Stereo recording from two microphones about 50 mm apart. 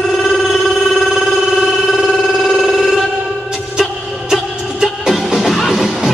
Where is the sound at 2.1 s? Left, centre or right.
Centre.